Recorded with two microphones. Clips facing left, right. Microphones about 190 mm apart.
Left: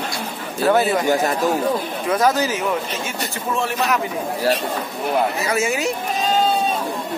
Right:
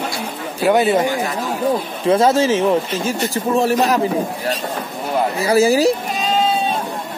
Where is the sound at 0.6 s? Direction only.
15° right (ahead or behind).